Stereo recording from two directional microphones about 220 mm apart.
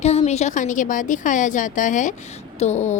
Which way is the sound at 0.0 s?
30° left (ahead or behind).